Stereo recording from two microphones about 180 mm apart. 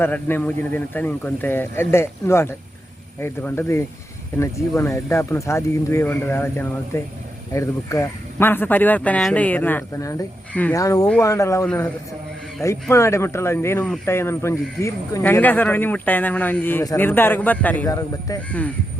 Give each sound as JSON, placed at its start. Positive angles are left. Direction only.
{"t": 0.0, "sound": "speech", "side_deg": 10}